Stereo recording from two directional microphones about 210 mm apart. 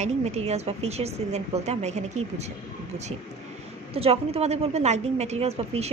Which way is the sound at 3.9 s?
30° right (ahead or behind).